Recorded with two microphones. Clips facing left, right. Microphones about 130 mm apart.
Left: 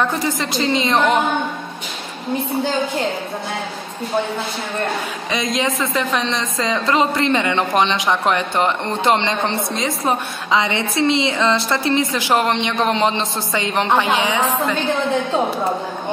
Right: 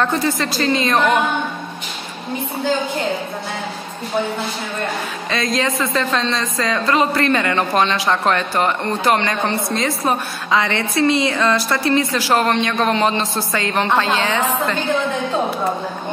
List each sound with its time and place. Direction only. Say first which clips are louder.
0.0 s a man's voice: right 1 dB; 15° left (ahead or behind)
5.3 s a man's voice: right 1 dB; 20° left (ahead or behind)